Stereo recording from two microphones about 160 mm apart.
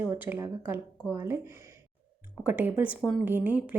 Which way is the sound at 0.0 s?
10° right (ahead or behind).